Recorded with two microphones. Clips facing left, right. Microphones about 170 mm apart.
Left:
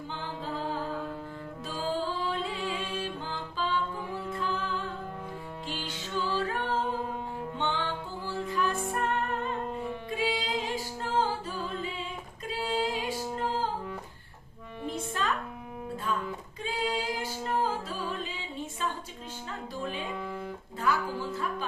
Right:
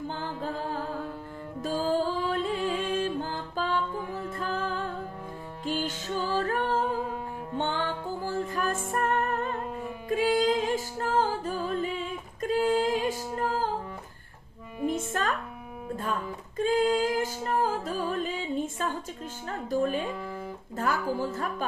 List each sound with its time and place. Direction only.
0.1 s music: 45° right (ahead or behind)
1.6 s music: 45° right (ahead or behind)
14.9 s music: 50° right (ahead or behind)
16.6 s music: 50° right (ahead or behind)
20.1 s music: 10° right (ahead or behind)
20.7 s music: 45° right (ahead or behind)